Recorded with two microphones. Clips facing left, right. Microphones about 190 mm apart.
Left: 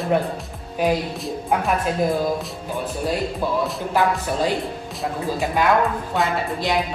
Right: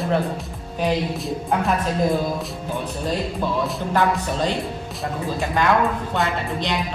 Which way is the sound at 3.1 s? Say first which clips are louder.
Even; 5° left (ahead or behind).